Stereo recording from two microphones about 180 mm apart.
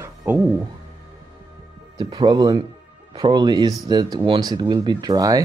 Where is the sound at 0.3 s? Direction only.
10° right (ahead or behind).